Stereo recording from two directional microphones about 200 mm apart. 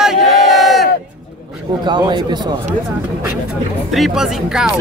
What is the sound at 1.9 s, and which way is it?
Speech, 20° right (ahead or behind).